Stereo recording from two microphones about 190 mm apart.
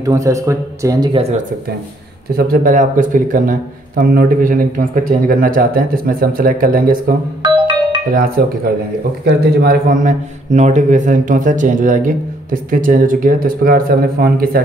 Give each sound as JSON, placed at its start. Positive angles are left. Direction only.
{"t": 0.0, "sound": "speech", "side_deg": -15}
{"t": 1.1, "sound": "speech", "side_deg": -35}
{"t": 2.3, "sound": "a man's voice", "side_deg": -50}
{"t": 8.1, "sound": "a man's voice", "side_deg": -50}